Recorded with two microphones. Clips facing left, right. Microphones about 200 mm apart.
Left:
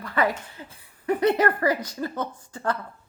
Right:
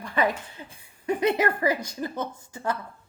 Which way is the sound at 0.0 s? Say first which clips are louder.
Left 1 dB; 15° right (ahead or behind).